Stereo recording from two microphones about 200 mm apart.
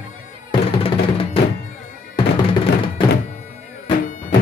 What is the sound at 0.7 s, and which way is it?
Music, 25° left (ahead or behind).